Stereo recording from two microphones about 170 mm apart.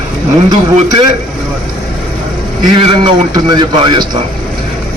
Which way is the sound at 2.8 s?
30° right (ahead or behind).